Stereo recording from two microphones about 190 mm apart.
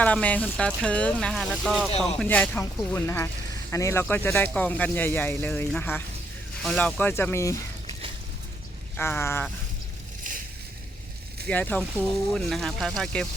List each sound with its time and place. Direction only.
0.0 s speech: 5° left (ahead or behind)
9.0 s speech: 10° left (ahead or behind)
10.3 s boat: 45° right (ahead or behind)
11.4 s speech: 10° left (ahead or behind)